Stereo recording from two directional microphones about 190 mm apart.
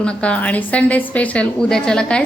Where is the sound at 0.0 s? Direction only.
5° left (ahead or behind).